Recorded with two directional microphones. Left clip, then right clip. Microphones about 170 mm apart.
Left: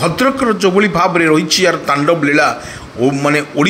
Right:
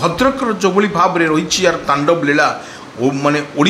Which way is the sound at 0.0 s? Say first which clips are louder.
Left 1 dB; 15° left (ahead or behind).